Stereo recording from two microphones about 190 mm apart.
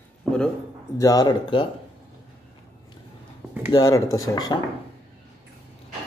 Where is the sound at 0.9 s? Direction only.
20° left (ahead or behind).